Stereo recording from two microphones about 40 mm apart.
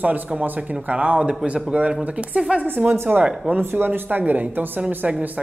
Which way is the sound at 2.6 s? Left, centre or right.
Right.